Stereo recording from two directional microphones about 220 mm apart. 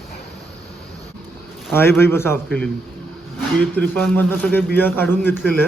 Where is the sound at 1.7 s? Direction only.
10° left (ahead or behind).